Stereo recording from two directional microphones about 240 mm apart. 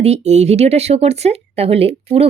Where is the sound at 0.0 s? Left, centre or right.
Right.